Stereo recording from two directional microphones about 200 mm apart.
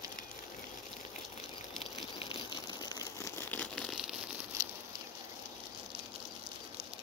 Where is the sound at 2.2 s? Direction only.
25° left (ahead or behind); by 4.1 s centre (ahead or behind).